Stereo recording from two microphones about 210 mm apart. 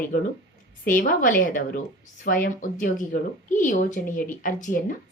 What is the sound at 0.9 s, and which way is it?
A woman's voice, 40° left (ahead or behind).